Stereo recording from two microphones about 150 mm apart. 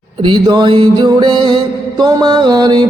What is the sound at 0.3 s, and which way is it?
Music, 30° right (ahead or behind).